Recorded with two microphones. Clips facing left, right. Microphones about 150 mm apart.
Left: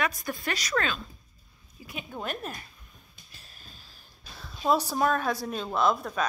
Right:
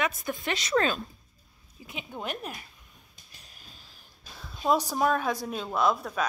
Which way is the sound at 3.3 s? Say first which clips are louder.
Left 1 dB; 15° right (ahead or behind).